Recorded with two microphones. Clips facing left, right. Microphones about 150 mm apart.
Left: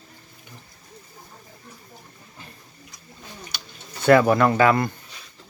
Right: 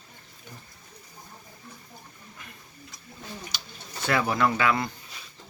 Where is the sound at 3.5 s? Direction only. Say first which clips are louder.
Left 1 dB; 60° left (ahead or behind).